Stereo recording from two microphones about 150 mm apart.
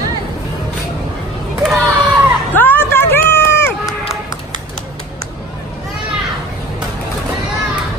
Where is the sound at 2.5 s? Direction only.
15° left (ahead or behind).